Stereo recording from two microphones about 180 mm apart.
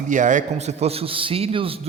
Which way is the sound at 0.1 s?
45° right (ahead or behind).